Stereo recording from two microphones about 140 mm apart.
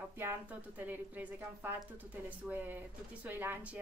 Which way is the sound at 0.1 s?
15° right (ahead or behind).